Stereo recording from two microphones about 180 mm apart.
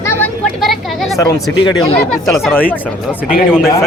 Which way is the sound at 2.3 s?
Centre (ahead or behind).